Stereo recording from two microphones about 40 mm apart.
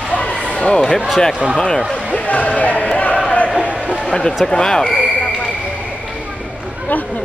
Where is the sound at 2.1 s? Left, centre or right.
Left.